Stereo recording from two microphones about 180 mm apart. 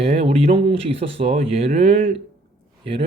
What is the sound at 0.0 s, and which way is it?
Speech, 35° right (ahead or behind).